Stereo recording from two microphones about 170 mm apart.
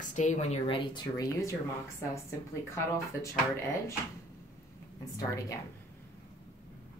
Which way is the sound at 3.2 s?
15° left (ahead or behind).